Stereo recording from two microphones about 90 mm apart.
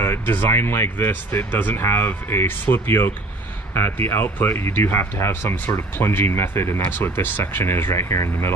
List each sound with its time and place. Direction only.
0.0 s speech: 25° left (ahead or behind)